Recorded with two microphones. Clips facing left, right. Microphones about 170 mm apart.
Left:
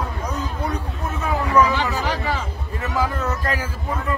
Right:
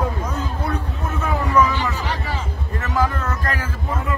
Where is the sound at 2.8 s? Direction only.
10° left (ahead or behind).